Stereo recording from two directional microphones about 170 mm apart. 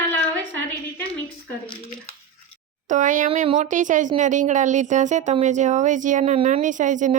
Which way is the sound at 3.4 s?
35° right (ahead or behind).